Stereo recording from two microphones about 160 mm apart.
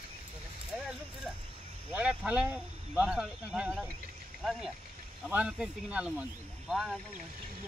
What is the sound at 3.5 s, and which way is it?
Cricket, 5° right (ahead or behind).